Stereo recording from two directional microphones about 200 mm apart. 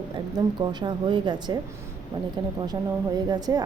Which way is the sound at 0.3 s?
20° right (ahead or behind).